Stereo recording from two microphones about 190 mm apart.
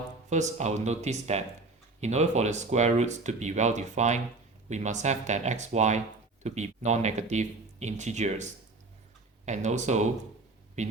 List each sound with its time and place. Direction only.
0.3 s speech: 40° right (ahead or behind)
9.5 s speech: 40° right (ahead or behind)